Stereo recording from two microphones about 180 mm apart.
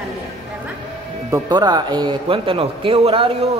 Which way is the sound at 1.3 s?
25° right (ahead or behind).